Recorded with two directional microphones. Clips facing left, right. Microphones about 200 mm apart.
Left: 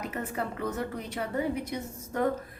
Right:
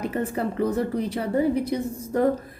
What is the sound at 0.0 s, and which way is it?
A woman's voice, 30° right (ahead or behind).